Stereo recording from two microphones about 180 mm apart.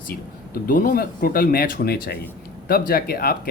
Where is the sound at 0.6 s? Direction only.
50° left (ahead or behind).